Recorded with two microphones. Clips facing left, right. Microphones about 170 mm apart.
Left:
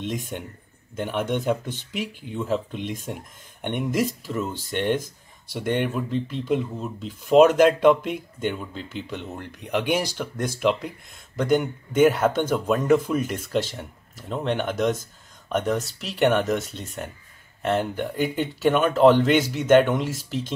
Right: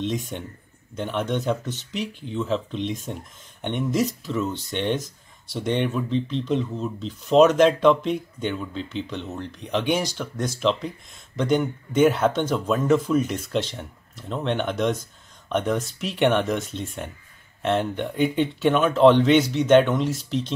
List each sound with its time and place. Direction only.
0.0 s speech: 50° left (ahead or behind)
0.9 s speech: 10° left (ahead or behind)
4.2 s speech: 10° left (ahead or behind)